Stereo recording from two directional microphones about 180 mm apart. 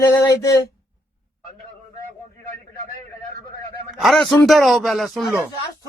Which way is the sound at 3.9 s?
Centre (ahead or behind).